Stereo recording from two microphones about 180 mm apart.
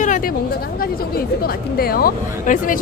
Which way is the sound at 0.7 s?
55° left (ahead or behind).